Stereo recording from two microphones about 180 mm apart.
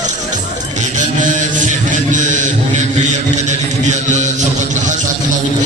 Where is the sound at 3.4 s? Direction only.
40° right (ahead or behind).